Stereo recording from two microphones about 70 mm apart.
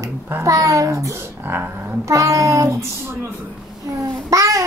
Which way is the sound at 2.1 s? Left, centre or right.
Right.